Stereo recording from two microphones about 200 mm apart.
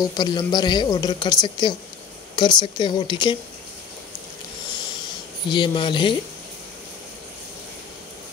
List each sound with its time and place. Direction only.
0.0 s a woman's voice: 20° left (ahead or behind)
5.5 s a woman's voice: 25° left (ahead or behind)